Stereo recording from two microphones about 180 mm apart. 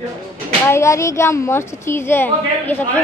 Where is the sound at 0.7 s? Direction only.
15° left (ahead or behind).